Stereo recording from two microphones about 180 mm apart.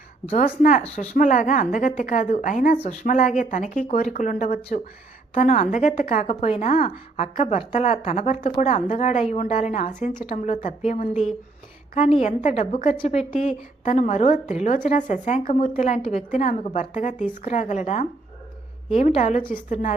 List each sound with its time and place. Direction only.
0.3 s a woman's voice: 45° left (ahead or behind)